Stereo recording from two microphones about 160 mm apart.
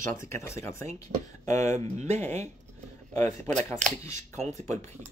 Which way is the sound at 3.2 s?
45° right (ahead or behind).